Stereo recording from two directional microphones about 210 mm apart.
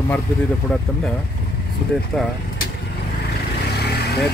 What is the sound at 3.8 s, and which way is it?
Vehicle, 50° left (ahead or behind).